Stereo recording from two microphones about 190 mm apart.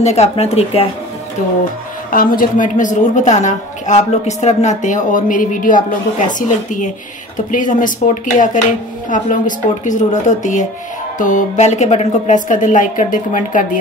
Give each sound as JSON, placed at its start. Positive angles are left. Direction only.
{"t": 0.0, "sound": "a woman's voice", "side_deg": 35}
{"t": 2.0, "sound": "a woman's voice", "side_deg": 45}